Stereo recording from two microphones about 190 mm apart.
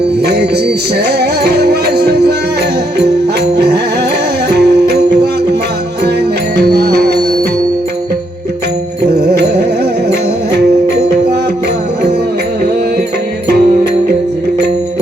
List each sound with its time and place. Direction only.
0.3 s music: 60° right (ahead or behind)
4.5 s music: 60° right (ahead or behind)
6.6 s music: 60° right (ahead or behind)
9.3 s music: 60° right (ahead or behind)